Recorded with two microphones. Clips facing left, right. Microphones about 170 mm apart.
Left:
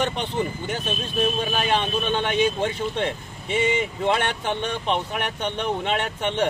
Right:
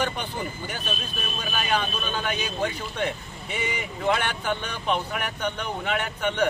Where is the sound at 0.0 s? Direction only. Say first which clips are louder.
Left 4 dB; 25° left (ahead or behind).